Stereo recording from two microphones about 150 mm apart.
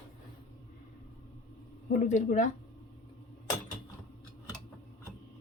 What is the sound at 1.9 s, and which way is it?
Speech, 55° left (ahead or behind).